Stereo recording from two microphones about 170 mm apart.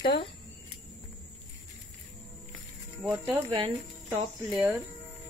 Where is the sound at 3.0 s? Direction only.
10° right (ahead or behind).